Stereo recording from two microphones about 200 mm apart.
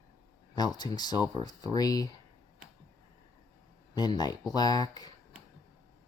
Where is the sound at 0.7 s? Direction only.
20° left (ahead or behind).